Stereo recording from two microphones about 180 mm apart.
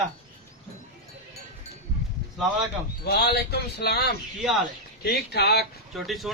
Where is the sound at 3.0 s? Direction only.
65° left (ahead or behind).